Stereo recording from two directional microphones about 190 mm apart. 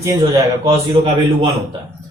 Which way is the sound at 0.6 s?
25° right (ahead or behind).